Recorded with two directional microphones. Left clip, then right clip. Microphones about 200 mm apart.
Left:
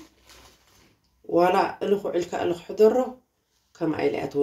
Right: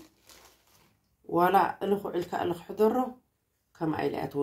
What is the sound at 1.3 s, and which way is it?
Speech, 40° right (ahead or behind).